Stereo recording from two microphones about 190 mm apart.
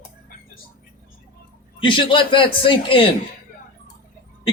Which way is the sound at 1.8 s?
25° left (ahead or behind).